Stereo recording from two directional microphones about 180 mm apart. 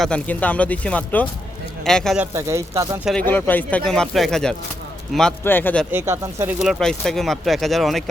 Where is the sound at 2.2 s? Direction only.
15° right (ahead or behind).